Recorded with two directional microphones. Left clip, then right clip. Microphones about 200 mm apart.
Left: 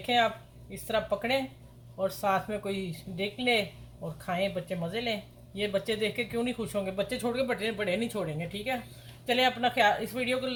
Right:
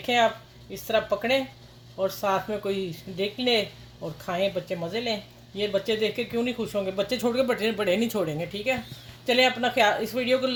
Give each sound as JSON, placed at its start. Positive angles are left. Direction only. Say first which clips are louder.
{"t": 0.7, "sound": "speech", "louder": "right 5 dB", "side_deg": -35}